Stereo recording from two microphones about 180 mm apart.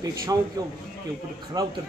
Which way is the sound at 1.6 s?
20° right (ahead or behind).